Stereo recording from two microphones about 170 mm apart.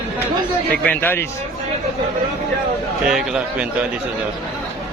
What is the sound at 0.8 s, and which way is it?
Speech, 10° left (ahead or behind).